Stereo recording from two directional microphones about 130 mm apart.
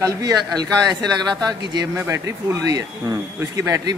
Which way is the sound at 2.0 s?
20° right (ahead or behind).